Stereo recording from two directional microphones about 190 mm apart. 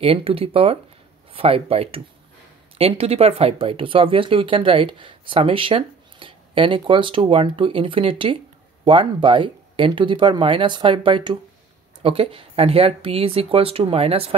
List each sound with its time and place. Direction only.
0.0 s speech: 30° right (ahead or behind)